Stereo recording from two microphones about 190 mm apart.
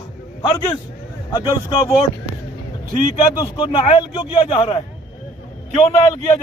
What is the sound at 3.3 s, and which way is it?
Speech, 25° left (ahead or behind).